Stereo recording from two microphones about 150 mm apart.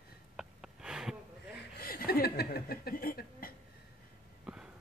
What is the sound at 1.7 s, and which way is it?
Chuckle, 85° left.